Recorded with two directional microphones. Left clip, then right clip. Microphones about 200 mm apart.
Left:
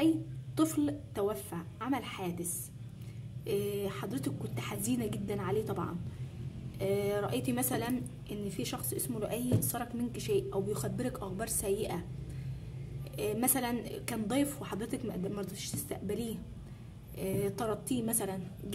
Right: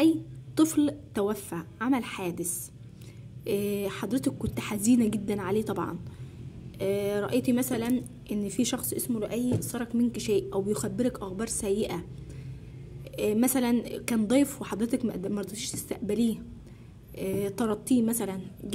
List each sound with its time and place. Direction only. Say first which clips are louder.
0.6 s a woman's voice: right 6 dB; 25° right (ahead or behind)
3.4 s a woman's voice: right 5 dB; 30° right (ahead or behind)
8.5 s a woman's voice: right 8 dB; 35° right (ahead or behind)
13.1 s a woman's voice: right 7 dB; 25° right (ahead or behind)